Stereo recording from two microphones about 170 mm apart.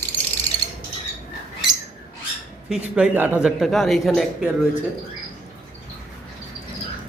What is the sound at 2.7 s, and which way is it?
Speech, 5° right (ahead or behind).